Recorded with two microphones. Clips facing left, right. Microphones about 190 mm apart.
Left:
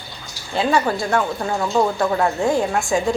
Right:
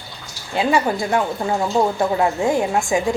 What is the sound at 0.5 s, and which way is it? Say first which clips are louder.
A woman's voice: even; 15° right (ahead or behind).